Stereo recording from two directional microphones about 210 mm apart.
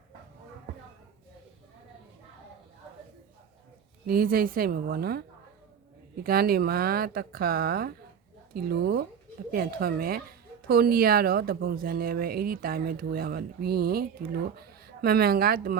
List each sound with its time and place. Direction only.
4.0 s speech: 45° right (ahead or behind)
6.2 s speech: 45° right (ahead or behind)